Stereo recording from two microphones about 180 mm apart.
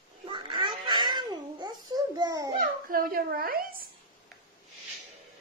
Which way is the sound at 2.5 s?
55° right (ahead or behind).